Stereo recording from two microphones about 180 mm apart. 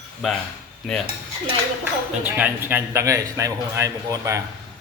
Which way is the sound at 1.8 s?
10° right (ahead or behind).